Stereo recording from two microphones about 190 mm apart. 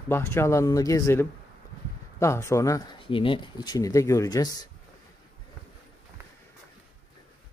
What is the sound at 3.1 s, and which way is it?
Speech, 25° left (ahead or behind).